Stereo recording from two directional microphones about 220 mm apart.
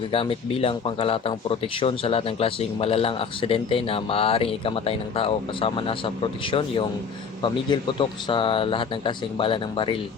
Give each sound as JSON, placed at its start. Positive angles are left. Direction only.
{"t": 0.1, "sound": "a man's voice", "side_deg": 25}